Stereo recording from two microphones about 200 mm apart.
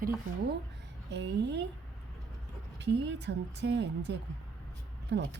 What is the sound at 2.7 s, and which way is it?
Speech, 60° right (ahead or behind).